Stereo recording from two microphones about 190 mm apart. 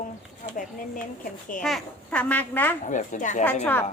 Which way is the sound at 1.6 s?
5° left (ahead or behind).